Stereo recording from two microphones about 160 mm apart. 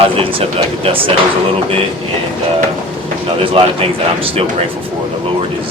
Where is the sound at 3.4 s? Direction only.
35° right (ahead or behind).